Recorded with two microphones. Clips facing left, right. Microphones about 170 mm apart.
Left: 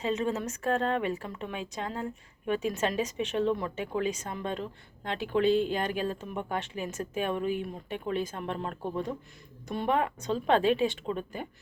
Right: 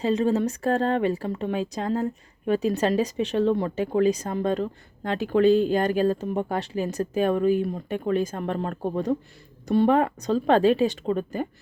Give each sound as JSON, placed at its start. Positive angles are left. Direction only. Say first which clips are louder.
{"t": 0.0, "sound": "speech", "louder": "right 8 dB", "side_deg": -35}